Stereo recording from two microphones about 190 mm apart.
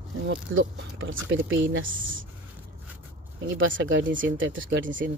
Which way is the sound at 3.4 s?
80° right.